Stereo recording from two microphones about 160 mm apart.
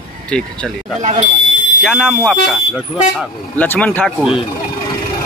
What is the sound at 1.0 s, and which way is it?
Speech, 45° right (ahead or behind).